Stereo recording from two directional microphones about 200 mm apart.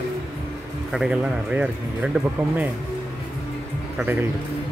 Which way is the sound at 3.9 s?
10° right (ahead or behind).